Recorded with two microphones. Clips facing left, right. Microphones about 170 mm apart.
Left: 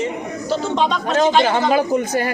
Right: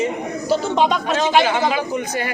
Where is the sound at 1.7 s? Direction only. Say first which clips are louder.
Left 5 dB; 45° left (ahead or behind).